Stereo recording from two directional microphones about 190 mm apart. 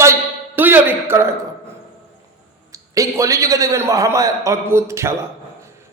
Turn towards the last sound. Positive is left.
turn(degrees=-15)  # may be behind; listen again after turning